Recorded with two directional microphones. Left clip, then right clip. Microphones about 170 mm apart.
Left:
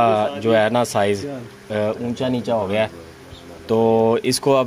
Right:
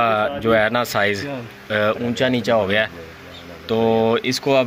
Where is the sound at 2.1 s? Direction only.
10° right (ahead or behind).